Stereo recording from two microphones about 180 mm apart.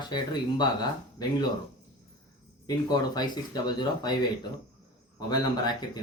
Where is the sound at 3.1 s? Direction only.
25° left (ahead or behind).